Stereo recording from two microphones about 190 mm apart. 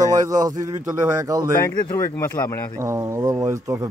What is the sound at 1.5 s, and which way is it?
Speech, 15° left (ahead or behind).